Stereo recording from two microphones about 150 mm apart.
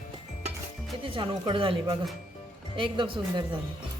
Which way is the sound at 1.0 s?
35° right (ahead or behind).